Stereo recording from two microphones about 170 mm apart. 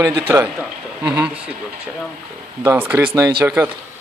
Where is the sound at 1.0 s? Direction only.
5° right (ahead or behind).